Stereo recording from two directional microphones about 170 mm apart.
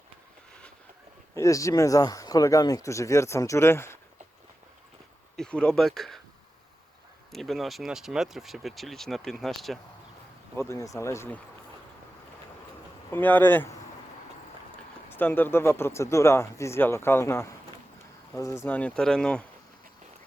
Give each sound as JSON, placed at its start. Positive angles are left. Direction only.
{"t": 1.4, "sound": "speech", "side_deg": 20}
{"t": 5.4, "sound": "speech", "side_deg": 5}
{"t": 7.3, "sound": "speech", "side_deg": 0}
{"t": 10.5, "sound": "speech", "side_deg": 15}
{"t": 13.1, "sound": "speech", "side_deg": 10}
{"t": 15.1, "sound": "speech", "side_deg": 10}